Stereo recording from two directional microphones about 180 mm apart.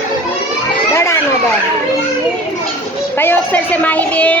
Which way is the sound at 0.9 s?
15° left (ahead or behind).